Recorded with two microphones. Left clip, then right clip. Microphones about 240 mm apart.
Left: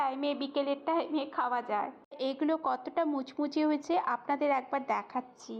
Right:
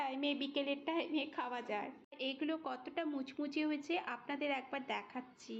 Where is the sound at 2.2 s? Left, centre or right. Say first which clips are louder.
Left 9 dB; centre.